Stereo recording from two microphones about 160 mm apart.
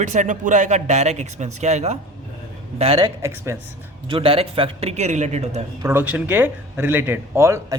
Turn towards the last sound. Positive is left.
turn(degrees=-20)  # may be behind; listen again after turning